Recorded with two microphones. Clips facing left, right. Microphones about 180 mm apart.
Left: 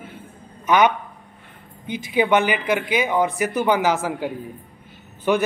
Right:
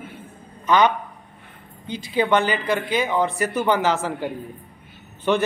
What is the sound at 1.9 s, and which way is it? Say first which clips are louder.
Speech: left 1 dB; 15° left (ahead or behind).